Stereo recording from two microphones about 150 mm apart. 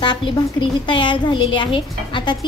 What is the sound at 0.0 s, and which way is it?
A woman's voice, 30° left (ahead or behind).